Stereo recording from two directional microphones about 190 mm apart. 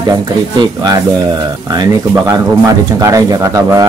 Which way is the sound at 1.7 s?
20° right (ahead or behind).